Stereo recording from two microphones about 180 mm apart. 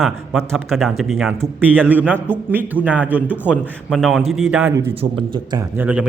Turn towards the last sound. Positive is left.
turn(degrees=-10)  # may be behind; listen again after turning